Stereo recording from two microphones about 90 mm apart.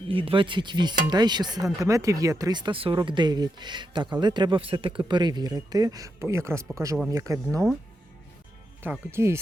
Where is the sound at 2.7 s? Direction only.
85° right.